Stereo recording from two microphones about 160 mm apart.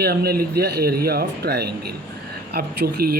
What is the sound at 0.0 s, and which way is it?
Speech, 75° right (ahead or behind).